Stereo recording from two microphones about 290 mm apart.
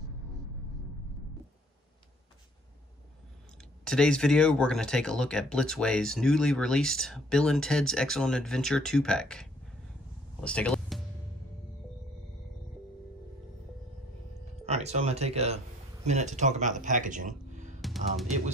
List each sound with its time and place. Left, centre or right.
3.8 s speech: centre
14.7 s speech: right
17.8 s drum: centre